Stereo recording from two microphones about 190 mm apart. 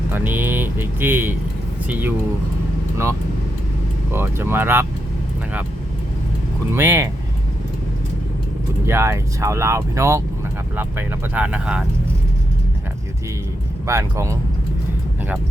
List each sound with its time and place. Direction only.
0.1 s speech: 10° right (ahead or behind)
4.1 s speech: 10° right (ahead or behind)
6.7 s speech: 10° right (ahead or behind)
8.9 s speech: 15° right (ahead or behind)
13.8 s speech: 15° right (ahead or behind)